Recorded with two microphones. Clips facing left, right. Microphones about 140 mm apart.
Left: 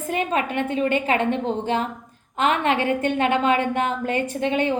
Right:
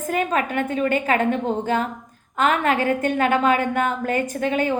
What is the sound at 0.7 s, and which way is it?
A woman's voice, 25° left (ahead or behind).